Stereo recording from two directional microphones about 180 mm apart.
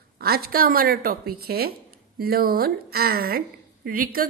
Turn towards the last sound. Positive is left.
turn(degrees=-55)  # may be behind; listen again after turning